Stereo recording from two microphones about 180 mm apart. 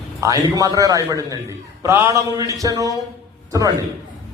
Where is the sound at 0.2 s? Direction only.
20° right (ahead or behind).